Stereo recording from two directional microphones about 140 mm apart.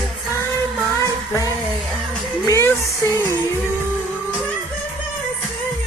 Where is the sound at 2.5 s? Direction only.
20° left (ahead or behind).